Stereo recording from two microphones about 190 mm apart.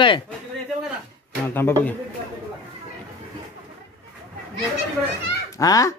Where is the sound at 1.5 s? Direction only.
10° left (ahead or behind).